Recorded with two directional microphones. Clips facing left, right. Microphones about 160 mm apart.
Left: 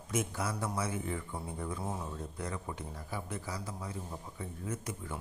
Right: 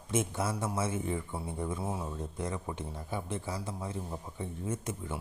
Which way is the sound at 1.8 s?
10° right (ahead or behind).